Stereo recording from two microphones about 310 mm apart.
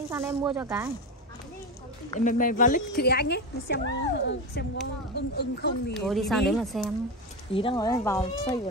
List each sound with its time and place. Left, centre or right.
0.1 s speech: centre
2.1 s speech: left
5.9 s speech: centre
7.5 s speech: centre